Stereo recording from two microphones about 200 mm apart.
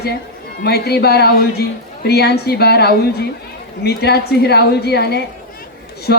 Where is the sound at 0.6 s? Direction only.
55° left (ahead or behind).